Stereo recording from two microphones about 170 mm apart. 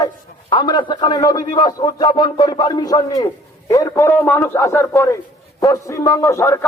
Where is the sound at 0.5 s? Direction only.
25° left (ahead or behind).